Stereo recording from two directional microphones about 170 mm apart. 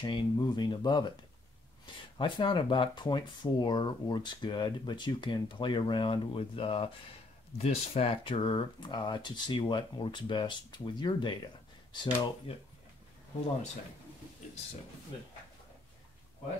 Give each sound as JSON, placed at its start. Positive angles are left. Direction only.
{"t": 0.0, "sound": "speech", "side_deg": 25}
{"t": 2.1, "sound": "speech", "side_deg": 30}